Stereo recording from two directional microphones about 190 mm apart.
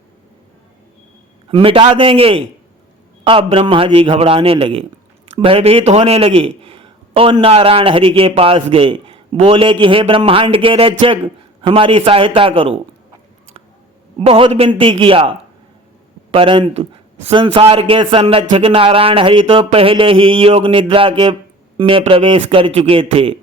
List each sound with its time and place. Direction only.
1.5 s a man's voice: 30° right (ahead or behind)
14.2 s a man's voice: 30° right (ahead or behind)